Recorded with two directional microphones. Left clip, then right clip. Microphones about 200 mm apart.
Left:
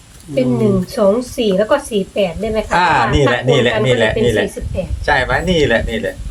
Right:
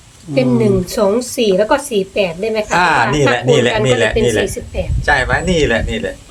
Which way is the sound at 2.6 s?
10° right (ahead or behind).